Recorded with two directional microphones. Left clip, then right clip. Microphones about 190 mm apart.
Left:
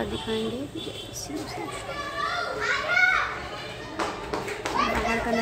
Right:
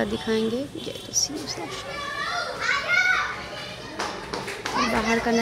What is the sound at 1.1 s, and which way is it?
Speech, 5° left (ahead or behind).